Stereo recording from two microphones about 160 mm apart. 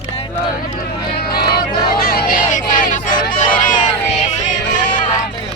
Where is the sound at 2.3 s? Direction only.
55° left (ahead or behind).